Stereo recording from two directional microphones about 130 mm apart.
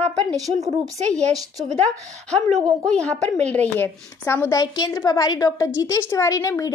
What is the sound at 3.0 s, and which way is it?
A woman's voice, 10° left (ahead or behind).